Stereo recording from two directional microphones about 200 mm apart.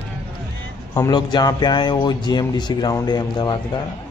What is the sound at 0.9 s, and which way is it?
Speech, 20° left (ahead or behind).